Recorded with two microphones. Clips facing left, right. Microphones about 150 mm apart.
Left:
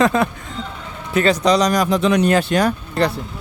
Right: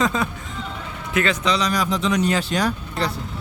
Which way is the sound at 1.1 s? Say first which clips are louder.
Left 6 dB; 35° left (ahead or behind).